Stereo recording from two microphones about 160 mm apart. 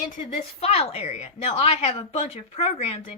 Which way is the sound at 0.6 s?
40° left (ahead or behind).